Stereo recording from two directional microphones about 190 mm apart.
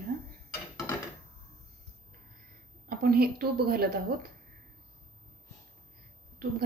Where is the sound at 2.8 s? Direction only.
50° right (ahead or behind).